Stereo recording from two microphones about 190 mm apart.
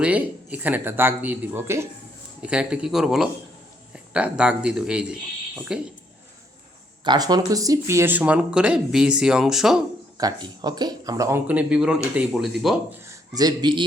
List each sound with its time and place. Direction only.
0.0 s speech: 5° right (ahead or behind)
7.0 s speech: 20° right (ahead or behind); by 9.8 s centre (ahead or behind)
10.2 s speech: 20° right (ahead or behind); by 12.8 s centre (ahead or behind)
13.0 s speech: 20° right (ahead or behind)